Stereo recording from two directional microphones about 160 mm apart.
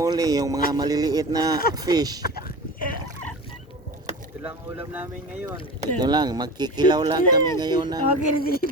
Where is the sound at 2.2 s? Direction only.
70° left (ahead or behind).